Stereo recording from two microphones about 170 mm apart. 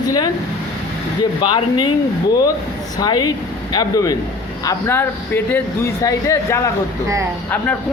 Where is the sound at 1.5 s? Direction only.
30° left (ahead or behind).